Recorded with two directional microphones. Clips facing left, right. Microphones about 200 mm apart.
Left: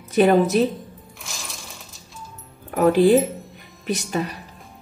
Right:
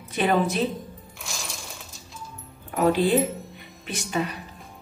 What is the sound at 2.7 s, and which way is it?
A woman's voice, 45° left (ahead or behind).